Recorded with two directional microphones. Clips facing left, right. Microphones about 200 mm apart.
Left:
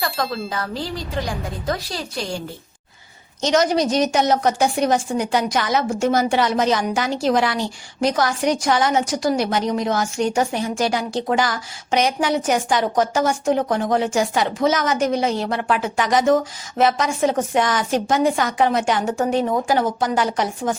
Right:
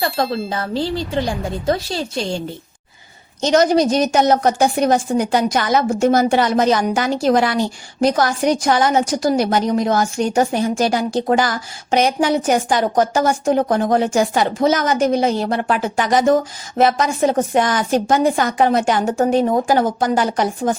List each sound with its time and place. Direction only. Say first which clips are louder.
0.5 s a woman's voice: right 5 dB; 30° right (ahead or behind)
3.4 s a woman's voice: right 4 dB; 35° right (ahead or behind)
4.1 s a woman's voice: right 3 dB; 50° right (ahead or behind)